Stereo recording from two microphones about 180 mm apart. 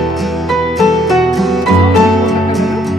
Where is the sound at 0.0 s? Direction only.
Centre (ahead or behind).